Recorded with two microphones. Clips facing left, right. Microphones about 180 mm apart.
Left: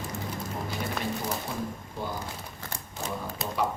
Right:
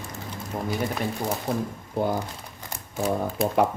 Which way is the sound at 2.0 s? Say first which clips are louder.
Right 11 dB; 65° right (ahead or behind).